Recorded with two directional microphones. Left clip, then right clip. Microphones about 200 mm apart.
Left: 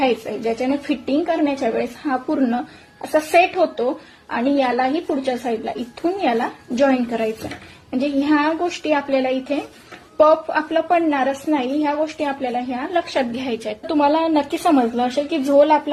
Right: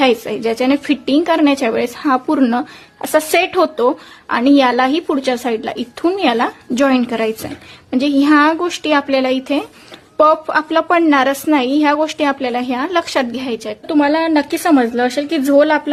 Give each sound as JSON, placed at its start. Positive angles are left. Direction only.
{"t": 0.0, "sound": "a woman's voice", "side_deg": -45}
{"t": 13.8, "sound": "a woman's voice", "side_deg": -40}